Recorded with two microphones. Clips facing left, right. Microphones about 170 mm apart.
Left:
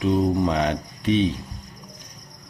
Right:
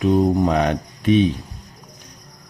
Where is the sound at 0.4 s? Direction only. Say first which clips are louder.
Right 3 dB; 50° right (ahead or behind).